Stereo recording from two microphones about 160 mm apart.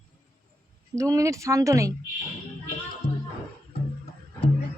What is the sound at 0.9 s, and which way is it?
Speech, 20° right (ahead or behind).